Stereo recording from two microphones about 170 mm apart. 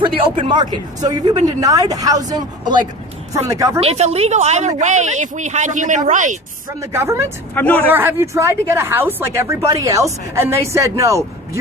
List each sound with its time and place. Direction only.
0.3 s speech: 30° right (ahead or behind)
3.8 s a woman's voice: 40° right (ahead or behind)
6.9 s speech: 15° right (ahead or behind)
7.5 s speech: 10° left (ahead or behind)
7.9 s speech: 10° right (ahead or behind)